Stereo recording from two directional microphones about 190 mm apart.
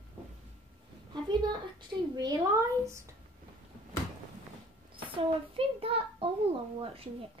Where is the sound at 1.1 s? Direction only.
25° right (ahead or behind).